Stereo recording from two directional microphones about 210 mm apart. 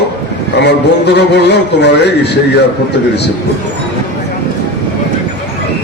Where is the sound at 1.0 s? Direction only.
50° left (ahead or behind).